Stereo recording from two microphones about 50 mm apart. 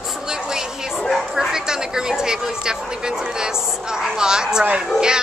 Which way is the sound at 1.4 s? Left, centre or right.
Centre.